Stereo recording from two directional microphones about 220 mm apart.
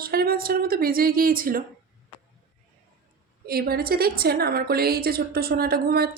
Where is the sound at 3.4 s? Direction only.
45° right (ahead or behind).